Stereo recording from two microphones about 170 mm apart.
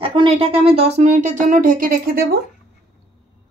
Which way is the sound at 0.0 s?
30° right (ahead or behind).